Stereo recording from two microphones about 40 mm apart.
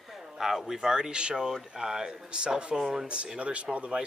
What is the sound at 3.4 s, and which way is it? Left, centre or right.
Speech, right.